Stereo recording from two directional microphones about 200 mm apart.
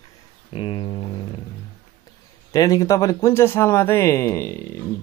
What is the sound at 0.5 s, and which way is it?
Speech, 25° left (ahead or behind).